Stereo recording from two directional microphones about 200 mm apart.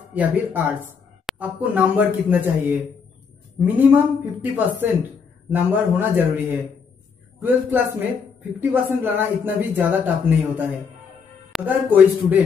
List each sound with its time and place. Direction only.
0.1 s speech: 10° right (ahead or behind)